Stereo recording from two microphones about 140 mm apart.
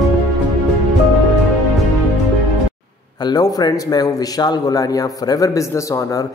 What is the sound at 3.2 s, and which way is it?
A man's voice, 30° left (ahead or behind).